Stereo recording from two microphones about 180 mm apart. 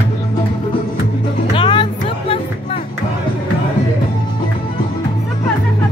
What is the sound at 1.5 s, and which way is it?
Music, 25° left (ahead or behind).